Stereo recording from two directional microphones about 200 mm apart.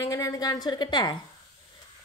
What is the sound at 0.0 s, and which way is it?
Speech, 15° left (ahead or behind).